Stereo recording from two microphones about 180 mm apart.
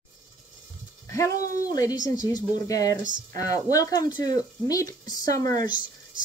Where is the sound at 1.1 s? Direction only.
15° left (ahead or behind).